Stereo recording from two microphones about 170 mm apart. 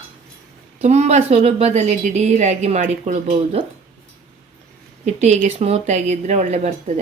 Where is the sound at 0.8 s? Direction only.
40° right (ahead or behind).